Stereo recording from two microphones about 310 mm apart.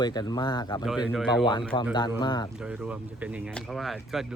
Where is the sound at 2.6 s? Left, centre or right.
Centre.